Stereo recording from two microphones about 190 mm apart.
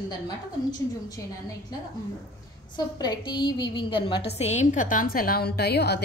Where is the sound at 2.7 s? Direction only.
20° left (ahead or behind).